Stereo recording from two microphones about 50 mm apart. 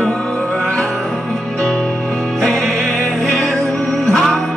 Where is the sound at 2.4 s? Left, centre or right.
Centre.